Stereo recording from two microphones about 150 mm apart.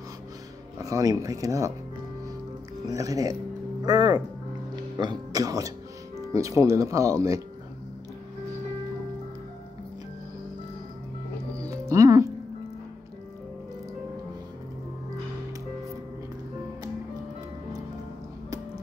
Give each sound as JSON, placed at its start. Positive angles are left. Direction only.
{"t": 0.7, "sound": "speech", "side_deg": -25}
{"t": 2.9, "sound": "speech", "side_deg": -25}
{"t": 11.6, "sound": "music", "side_deg": -20}